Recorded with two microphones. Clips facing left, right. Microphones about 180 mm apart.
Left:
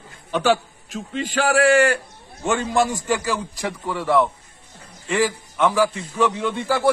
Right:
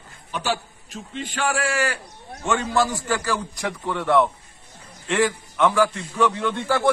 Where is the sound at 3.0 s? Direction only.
10° left (ahead or behind).